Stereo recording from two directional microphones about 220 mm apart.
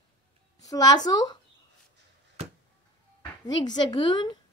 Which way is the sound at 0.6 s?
15° left (ahead or behind).